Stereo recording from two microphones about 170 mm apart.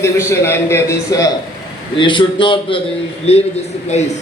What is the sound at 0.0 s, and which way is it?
A man's voice, 15° left (ahead or behind).